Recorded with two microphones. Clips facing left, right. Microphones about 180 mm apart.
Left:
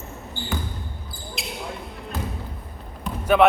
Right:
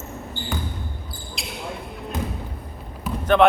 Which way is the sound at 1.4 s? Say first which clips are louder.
Left 2 dB; centre (ahead or behind).